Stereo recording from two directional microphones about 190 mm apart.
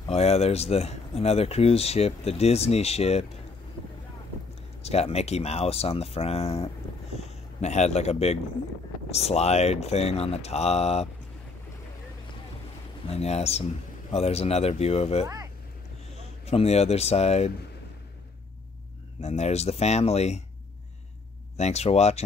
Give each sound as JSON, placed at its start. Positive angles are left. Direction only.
{"t": 0.0, "sound": "speech", "side_deg": 35}
{"t": 4.8, "sound": "speech", "side_deg": 35}
{"t": 13.1, "sound": "speech", "side_deg": 35}
{"t": 16.4, "sound": "speech", "side_deg": 35}
{"t": 19.2, "sound": "speech", "side_deg": 35}
{"t": 21.5, "sound": "speech", "side_deg": 35}